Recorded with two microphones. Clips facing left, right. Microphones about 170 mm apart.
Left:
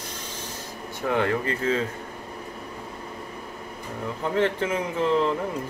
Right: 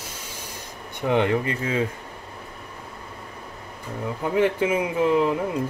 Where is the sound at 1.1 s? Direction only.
20° right (ahead or behind).